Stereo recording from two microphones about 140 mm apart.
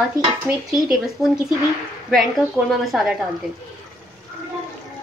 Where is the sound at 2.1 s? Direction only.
Centre (ahead or behind).